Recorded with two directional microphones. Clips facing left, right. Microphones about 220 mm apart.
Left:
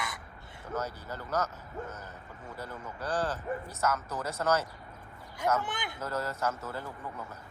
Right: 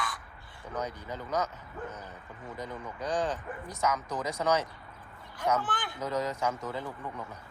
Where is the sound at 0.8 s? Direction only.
5° left (ahead or behind).